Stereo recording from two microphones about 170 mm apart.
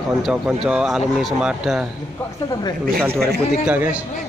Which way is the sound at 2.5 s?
25° left (ahead or behind).